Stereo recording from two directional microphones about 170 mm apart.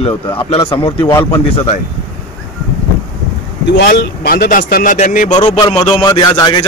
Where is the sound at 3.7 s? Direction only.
90° left; by 5.2 s 50° left (ahead or behind).